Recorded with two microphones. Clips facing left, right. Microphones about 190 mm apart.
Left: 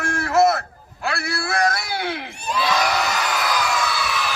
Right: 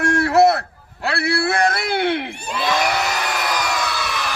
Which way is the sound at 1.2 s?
60° right (ahead or behind).